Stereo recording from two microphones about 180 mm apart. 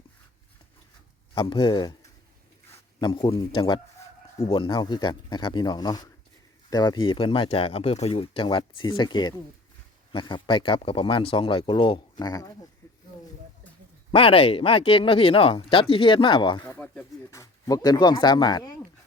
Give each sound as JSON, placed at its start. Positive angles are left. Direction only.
{"t": 1.4, "sound": "speech", "side_deg": 25}
{"t": 3.0, "sound": "speech", "side_deg": 25}
{"t": 14.1, "sound": "speech", "side_deg": 30}
{"t": 16.6, "sound": "speech", "side_deg": 10}